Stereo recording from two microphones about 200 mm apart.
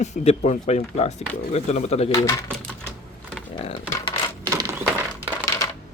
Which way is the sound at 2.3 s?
5° left (ahead or behind).